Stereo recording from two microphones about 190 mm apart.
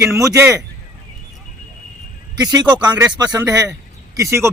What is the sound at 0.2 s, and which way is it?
Speech, 15° right (ahead or behind).